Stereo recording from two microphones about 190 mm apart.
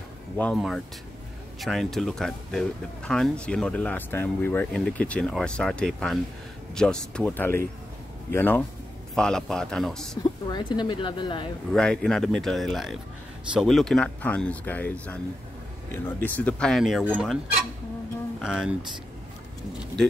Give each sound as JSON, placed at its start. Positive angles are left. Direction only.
{"t": 0.4, "sound": "speech", "side_deg": 5}
{"t": 10.5, "sound": "speech", "side_deg": 25}
{"t": 11.7, "sound": "speech", "side_deg": 5}
{"t": 18.4, "sound": "speech", "side_deg": -5}